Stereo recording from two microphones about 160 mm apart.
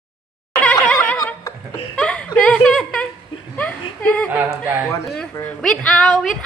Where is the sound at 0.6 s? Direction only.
5° left (ahead or behind).